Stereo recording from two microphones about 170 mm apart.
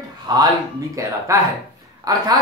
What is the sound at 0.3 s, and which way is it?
Speech, 25° right (ahead or behind).